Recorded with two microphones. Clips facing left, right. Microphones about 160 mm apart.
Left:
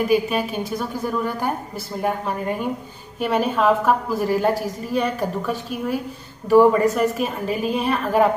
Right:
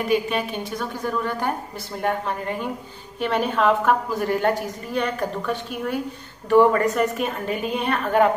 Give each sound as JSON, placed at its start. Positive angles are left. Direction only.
{"t": 0.1, "sound": "a woman's voice", "side_deg": 5}